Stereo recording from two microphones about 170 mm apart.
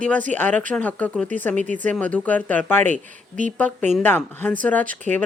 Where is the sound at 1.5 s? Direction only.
45° right (ahead or behind).